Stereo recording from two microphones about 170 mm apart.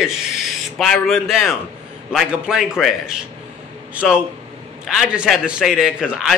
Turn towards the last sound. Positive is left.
turn(degrees=-5)  # may be behind; listen again after turning